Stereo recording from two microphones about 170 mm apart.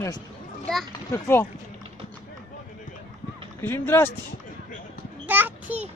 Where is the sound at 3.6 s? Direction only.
15° left (ahead or behind).